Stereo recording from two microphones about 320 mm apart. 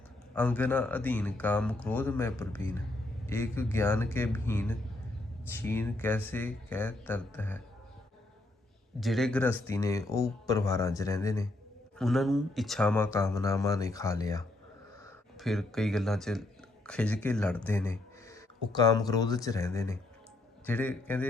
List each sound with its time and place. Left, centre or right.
0.3 s speech: centre
9.0 s speech: centre
15.4 s speech: centre